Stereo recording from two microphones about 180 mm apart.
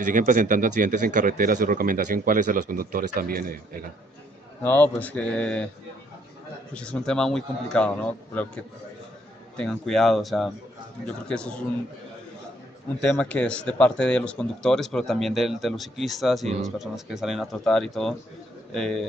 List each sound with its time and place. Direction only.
0.0 s speech: 45° right (ahead or behind)
4.6 s speech: 10° left (ahead or behind)
6.7 s speech: 5° left (ahead or behind)
9.6 s speech: centre (ahead or behind)
13.0 s speech: 5° left (ahead or behind)